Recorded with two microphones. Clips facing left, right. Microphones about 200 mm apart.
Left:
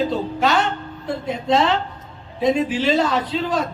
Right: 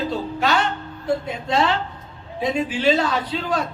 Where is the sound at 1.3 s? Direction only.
Centre (ahead or behind).